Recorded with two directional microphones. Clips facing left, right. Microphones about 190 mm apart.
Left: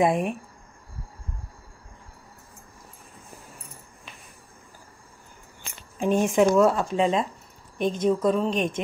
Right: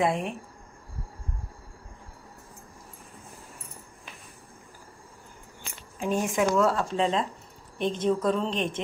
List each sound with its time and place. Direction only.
0.0 s speech: 15° left (ahead or behind)
5.9 s speech: 20° left (ahead or behind)